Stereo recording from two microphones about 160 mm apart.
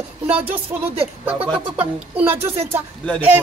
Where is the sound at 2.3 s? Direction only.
35° right (ahead or behind).